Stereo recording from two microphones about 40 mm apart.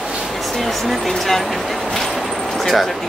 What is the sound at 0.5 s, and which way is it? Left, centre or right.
Speech, centre.